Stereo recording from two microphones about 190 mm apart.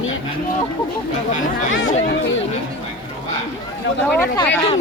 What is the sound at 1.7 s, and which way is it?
Speech, 85° left.